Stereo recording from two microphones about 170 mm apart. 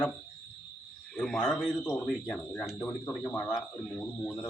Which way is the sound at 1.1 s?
5° left (ahead or behind).